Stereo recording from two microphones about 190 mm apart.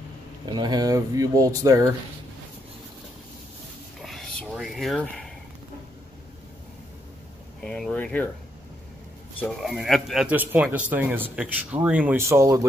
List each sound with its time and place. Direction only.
0.6 s speech: 20° right (ahead or behind)
4.0 s a sound: centre (ahead or behind)
7.6 s speech: 5° left (ahead or behind)
9.4 s speech: centre (ahead or behind)